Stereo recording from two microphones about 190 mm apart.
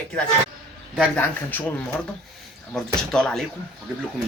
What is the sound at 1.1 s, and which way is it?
Speech, 10° left (ahead or behind).